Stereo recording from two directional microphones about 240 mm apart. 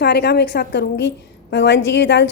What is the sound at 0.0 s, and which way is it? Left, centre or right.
A woman's voice, left.